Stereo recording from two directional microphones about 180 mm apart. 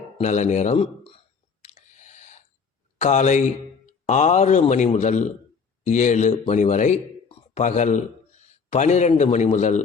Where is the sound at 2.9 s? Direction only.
40° left (ahead or behind).